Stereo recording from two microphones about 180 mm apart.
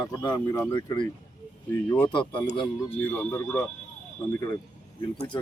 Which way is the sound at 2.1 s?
25° left (ahead or behind).